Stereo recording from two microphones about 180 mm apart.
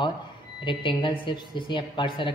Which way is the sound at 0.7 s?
25° left (ahead or behind).